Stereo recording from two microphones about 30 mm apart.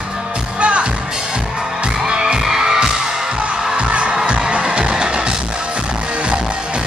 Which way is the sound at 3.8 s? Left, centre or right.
Right.